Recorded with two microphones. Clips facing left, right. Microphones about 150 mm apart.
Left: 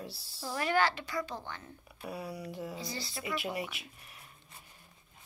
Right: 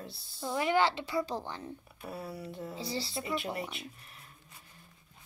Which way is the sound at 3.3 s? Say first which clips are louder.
Left 1 dB; centre (ahead or behind).